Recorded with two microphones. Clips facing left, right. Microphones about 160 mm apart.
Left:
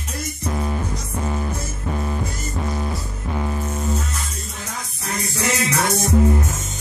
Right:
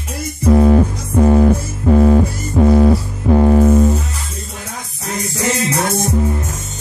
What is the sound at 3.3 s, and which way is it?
Music, 55° right (ahead or behind).